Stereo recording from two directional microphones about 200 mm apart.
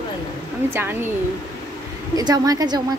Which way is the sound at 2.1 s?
20° right (ahead or behind).